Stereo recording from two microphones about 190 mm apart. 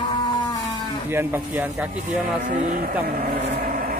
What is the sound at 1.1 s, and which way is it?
Speech, 10° right (ahead or behind).